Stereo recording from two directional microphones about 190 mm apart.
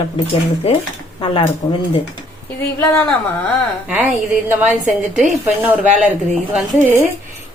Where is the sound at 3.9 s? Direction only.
10° right (ahead or behind).